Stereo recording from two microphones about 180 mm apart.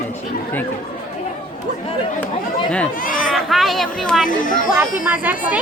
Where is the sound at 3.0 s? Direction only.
50° left (ahead or behind).